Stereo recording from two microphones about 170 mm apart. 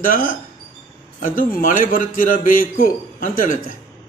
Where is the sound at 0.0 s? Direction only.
55° left (ahead or behind).